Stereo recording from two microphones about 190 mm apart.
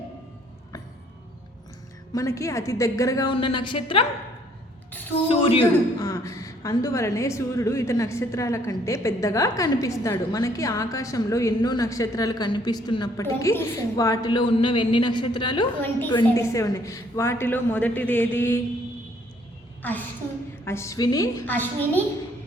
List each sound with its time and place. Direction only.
2.1 s a man's voice: 15° left (ahead or behind)
5.3 s a man's voice: 30° left (ahead or behind)
15.8 s a man's voice: 10° left (ahead or behind)
19.8 s a woman's voice: 10° left (ahead or behind)